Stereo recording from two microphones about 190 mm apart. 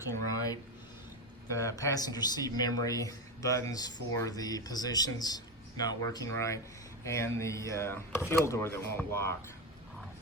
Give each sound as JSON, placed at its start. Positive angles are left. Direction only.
{"t": 0.3, "sound": "speech", "side_deg": 20}